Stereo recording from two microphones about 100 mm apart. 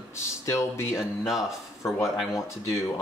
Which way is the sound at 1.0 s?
5° right (ahead or behind).